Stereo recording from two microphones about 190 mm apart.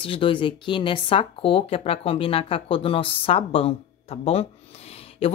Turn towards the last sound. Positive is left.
turn(degrees=30)  # may be behind; listen again after turning